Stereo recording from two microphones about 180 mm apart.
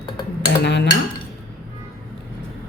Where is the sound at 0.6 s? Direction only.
75° left (ahead or behind).